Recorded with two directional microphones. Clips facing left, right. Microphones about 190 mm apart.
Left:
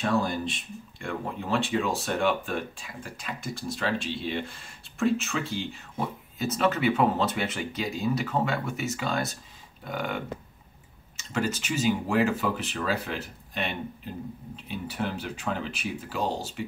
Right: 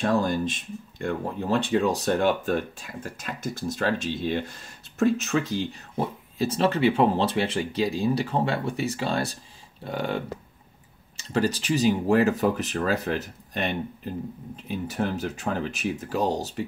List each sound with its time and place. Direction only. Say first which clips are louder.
0.2 s speech: right 4 dB; 45° right (ahead or behind)